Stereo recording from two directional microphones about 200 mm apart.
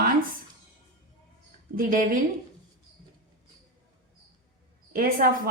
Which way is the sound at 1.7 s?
45° right (ahead or behind).